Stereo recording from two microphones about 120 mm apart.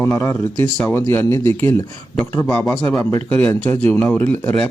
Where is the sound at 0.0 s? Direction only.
20° left (ahead or behind).